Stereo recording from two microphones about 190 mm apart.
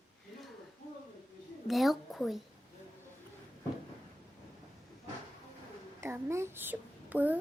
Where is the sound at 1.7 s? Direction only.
Centre (ahead or behind).